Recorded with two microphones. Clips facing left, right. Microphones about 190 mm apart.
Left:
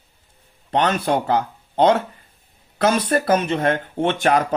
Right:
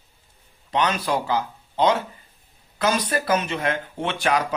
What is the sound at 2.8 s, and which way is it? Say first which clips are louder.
Speech: left 5 dB; 50° left (ahead or behind).